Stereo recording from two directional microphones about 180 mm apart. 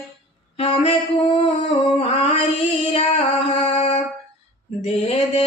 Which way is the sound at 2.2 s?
30° left (ahead or behind).